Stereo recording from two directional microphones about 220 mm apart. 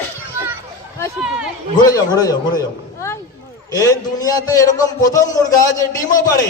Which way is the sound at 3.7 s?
15° left (ahead or behind).